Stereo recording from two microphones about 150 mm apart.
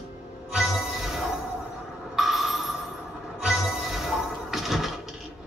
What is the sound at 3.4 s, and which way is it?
Music, centre (ahead or behind).